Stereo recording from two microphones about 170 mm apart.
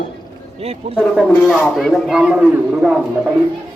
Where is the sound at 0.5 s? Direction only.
35° right (ahead or behind).